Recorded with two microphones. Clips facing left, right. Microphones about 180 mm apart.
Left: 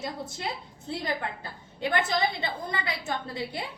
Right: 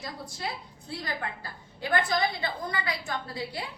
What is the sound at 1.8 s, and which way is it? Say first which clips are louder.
A woman's voice: even; 20° left (ahead or behind).